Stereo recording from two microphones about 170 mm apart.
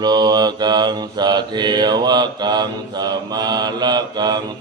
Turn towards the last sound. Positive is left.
turn(degrees=-25)  # may be behind; listen again after turning